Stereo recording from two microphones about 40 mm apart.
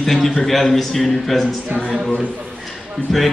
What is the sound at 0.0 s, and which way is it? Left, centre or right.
A man's voice, centre.